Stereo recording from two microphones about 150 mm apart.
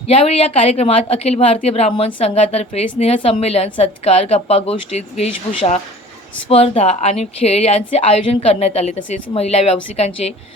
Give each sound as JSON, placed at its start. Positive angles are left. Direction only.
{"t": 0.1, "sound": "a woman's voice", "side_deg": 40}